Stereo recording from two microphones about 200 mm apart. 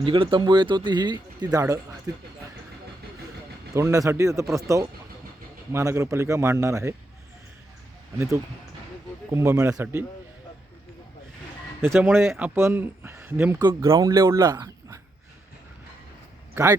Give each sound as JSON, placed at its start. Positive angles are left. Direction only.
{"t": 0.0, "sound": "speech", "side_deg": -25}
{"t": 3.8, "sound": "speech", "side_deg": -15}
{"t": 9.3, "sound": "speech", "side_deg": -15}
{"t": 11.9, "sound": "speech", "side_deg": -10}
{"t": 16.6, "sound": "speech", "side_deg": -10}